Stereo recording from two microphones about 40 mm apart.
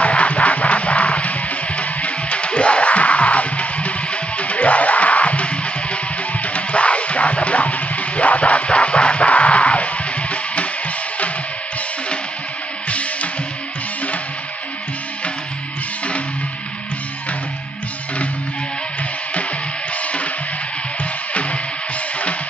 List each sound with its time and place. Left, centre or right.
0.0 s music: left
21.0 s music: left